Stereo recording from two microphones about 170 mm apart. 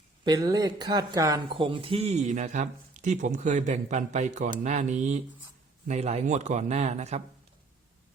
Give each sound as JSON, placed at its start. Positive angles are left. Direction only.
{"t": 0.3, "sound": "a man's voice", "side_deg": -20}